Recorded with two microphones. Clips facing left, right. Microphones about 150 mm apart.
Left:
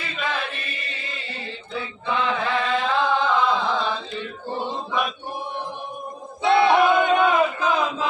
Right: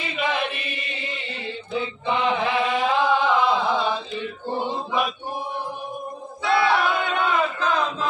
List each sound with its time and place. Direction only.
0.0 s chant: 10° right (ahead or behind)
1.7 s chant: 20° right (ahead or behind)
4.5 s mantra: 10° right (ahead or behind)
6.4 s battle cry: 20° left (ahead or behind)